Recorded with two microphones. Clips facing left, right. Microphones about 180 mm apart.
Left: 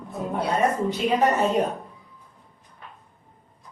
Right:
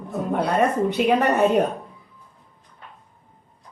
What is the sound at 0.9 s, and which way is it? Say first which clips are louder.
Speech: right 2 dB; 60° right (ahead or behind).